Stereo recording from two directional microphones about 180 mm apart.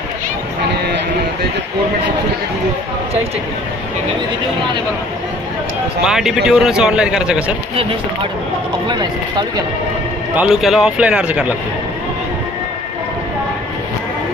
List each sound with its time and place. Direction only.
6.0 s a man's voice: centre (ahead or behind)
8.8 s speech: 25° right (ahead or behind)
10.3 s a man's voice: 5° right (ahead or behind)